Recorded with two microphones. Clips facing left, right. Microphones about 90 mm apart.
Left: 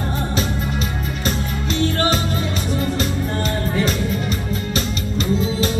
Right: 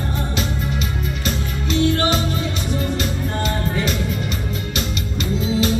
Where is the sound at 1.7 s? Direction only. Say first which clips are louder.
Right 2 dB; 40° left (ahead or behind).